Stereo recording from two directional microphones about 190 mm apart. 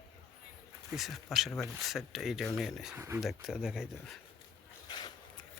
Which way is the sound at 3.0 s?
10° right (ahead or behind).